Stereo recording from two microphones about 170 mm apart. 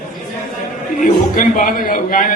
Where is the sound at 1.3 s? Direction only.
55° left (ahead or behind).